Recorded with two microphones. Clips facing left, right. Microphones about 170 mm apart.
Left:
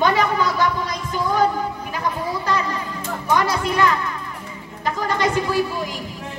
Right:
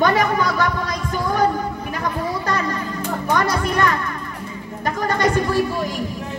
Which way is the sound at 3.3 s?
50° right (ahead or behind).